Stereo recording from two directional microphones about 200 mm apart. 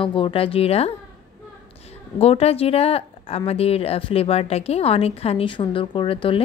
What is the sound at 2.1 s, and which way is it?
A woman's voice, 30° left (ahead or behind).